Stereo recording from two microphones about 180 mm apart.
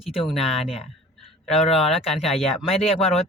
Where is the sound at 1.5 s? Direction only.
35° left (ahead or behind).